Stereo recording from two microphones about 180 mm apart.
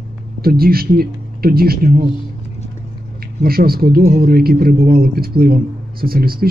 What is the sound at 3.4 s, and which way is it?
A man's voice, 55° right (ahead or behind).